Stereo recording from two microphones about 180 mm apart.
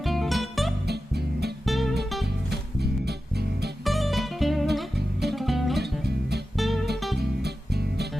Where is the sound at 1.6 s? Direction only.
Centre (ahead or behind).